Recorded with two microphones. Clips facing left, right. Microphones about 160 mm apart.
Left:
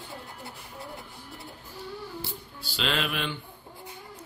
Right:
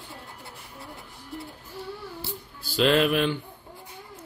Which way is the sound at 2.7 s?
45° right (ahead or behind).